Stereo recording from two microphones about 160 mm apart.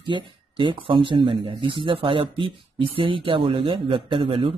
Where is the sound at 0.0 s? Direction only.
30° right (ahead or behind).